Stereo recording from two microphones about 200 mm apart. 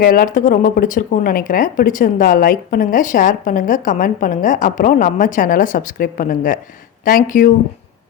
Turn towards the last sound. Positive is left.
turn(degrees=40)  # may be behind; listen again after turning